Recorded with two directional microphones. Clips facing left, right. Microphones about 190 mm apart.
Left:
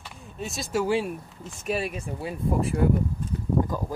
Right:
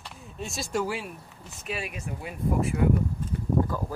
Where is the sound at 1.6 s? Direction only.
40° left (ahead or behind).